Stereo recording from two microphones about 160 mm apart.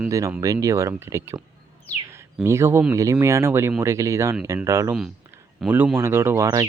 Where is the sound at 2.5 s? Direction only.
15° right (ahead or behind).